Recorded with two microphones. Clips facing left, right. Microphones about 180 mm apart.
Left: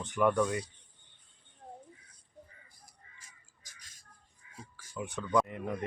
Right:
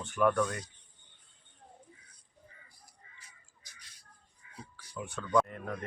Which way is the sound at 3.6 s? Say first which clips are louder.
Left 1 dB; 45° left (ahead or behind).